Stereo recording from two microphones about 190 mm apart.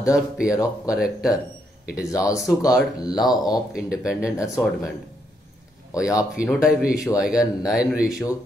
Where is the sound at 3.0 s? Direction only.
20° left (ahead or behind).